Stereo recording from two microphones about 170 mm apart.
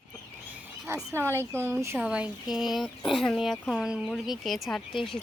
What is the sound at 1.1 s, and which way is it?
Speech, 15° right (ahead or behind).